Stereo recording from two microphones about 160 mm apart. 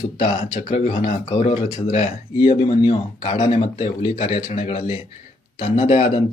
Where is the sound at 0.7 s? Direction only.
40° left (ahead or behind).